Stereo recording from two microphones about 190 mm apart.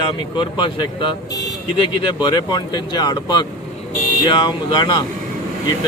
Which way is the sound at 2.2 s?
20° left (ahead or behind).